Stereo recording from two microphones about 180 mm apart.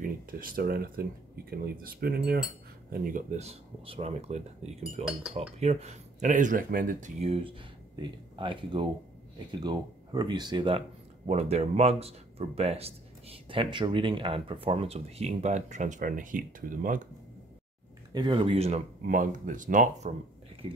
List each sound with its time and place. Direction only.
0.0 s speech: 50° right (ahead or behind)
2.9 s speech: 50° right (ahead or behind); by 10.8 s 25° right (ahead or behind)
11.2 s speech: 35° right (ahead or behind)
18.1 s speech: 25° right (ahead or behind)
19.0 s speech: 45° right (ahead or behind)
20.6 s speech: 30° right (ahead or behind)